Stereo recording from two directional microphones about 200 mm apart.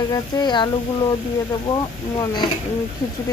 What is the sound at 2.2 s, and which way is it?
Speech, 20° left (ahead or behind).